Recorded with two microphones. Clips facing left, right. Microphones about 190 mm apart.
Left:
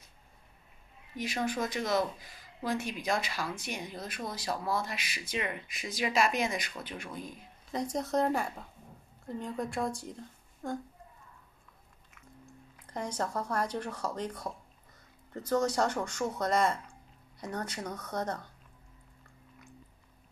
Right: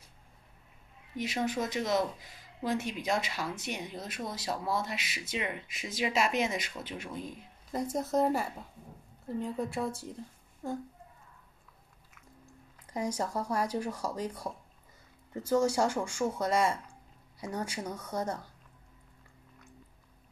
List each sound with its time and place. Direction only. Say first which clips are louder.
1.1 s speech: right 1 dB; 20° right (ahead or behind)
7.7 s speech: right 1 dB; 5° right (ahead or behind)
12.8 s speech: right 2 dB; 10° right (ahead or behind)